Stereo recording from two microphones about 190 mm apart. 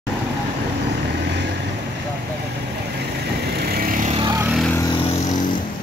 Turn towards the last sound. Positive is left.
turn(degrees=0)  # may be behind; listen again after turning